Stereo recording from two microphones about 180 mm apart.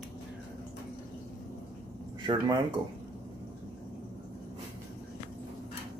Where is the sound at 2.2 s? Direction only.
25° right (ahead or behind).